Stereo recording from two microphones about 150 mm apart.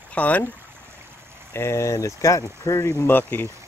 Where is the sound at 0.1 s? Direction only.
10° left (ahead or behind).